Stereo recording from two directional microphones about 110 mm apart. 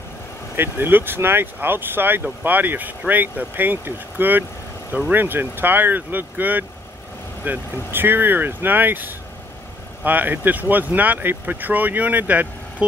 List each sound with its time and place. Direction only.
0.6 s speech: 20° right (ahead or behind)